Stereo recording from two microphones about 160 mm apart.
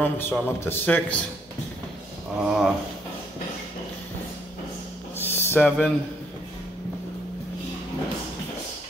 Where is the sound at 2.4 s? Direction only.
5° right (ahead or behind).